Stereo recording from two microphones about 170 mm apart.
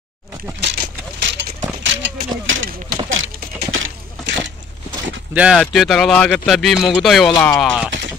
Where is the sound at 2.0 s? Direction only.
90° right.